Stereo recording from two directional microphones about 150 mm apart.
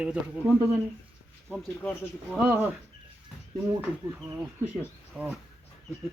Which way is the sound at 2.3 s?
10° right (ahead or behind).